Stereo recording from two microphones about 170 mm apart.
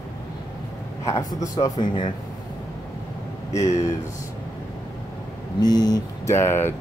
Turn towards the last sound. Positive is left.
turn(degrees=15)  # may be behind; listen again after turning